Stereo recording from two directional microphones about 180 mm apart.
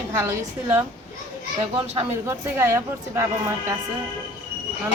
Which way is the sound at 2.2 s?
15° right (ahead or behind).